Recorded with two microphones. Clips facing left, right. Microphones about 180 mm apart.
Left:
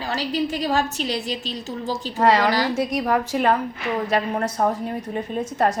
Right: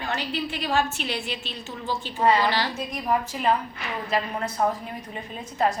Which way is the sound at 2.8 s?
75° left (ahead or behind).